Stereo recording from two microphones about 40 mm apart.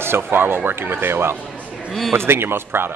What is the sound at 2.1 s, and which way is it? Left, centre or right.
Speech, right.